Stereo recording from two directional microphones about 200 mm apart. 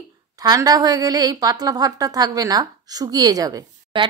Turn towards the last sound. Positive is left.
turn(degrees=-20)  # may be behind; listen again after turning